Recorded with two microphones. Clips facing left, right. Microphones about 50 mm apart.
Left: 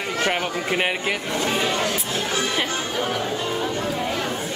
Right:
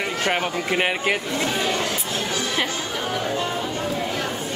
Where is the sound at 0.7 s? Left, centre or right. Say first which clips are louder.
Even; centre.